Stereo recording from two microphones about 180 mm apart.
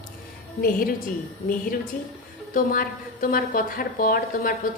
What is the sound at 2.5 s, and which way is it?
A woman's voice, 55° left (ahead or behind).